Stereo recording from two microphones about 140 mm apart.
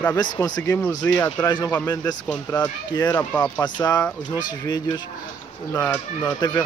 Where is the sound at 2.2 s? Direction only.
10° left (ahead or behind).